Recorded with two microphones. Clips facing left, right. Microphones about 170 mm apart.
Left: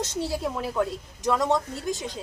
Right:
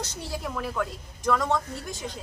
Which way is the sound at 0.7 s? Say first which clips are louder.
Left 4 dB; 25° left (ahead or behind).